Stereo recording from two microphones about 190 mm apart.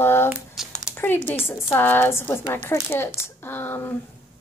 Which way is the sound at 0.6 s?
Centre (ahead or behind).